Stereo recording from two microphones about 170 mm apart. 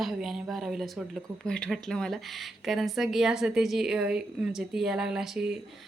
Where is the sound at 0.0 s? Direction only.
Centre (ahead or behind).